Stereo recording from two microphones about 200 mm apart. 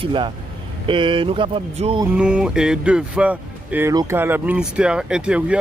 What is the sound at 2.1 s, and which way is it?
Speech, 5° right (ahead or behind).